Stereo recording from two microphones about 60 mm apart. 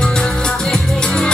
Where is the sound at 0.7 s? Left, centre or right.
Centre.